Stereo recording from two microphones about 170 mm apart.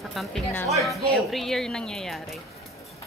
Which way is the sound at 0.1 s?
Centre (ahead or behind).